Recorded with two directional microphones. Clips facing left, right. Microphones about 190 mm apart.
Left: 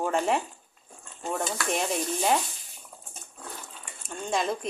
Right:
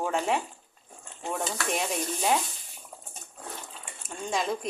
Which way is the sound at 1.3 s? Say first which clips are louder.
Left 1 dB; centre (ahead or behind).